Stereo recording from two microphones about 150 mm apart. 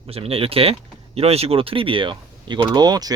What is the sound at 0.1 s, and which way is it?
Speech, 40° right (ahead or behind).